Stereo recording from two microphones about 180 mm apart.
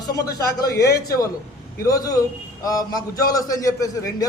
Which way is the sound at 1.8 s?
20° left (ahead or behind).